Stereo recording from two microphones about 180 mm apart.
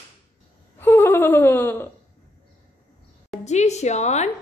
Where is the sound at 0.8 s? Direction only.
15° left (ahead or behind).